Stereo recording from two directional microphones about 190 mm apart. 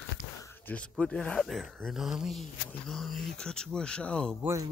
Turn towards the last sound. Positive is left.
turn(degrees=-15)  # may be behind; listen again after turning